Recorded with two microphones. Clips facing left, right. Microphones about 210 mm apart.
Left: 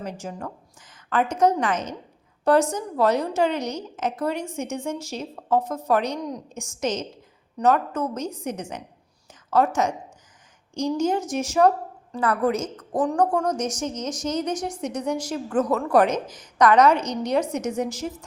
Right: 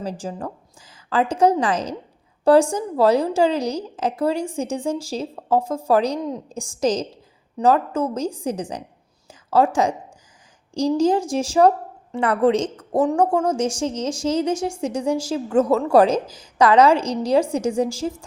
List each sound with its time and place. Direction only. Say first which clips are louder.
0.0 s a woman's voice: right 4 dB; 30° right (ahead or behind)
10.8 s a woman's voice: right 5 dB; 35° right (ahead or behind)